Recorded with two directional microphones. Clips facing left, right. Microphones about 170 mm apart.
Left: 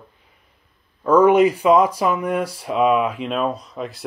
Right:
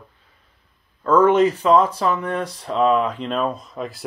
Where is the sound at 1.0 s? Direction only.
10° left (ahead or behind).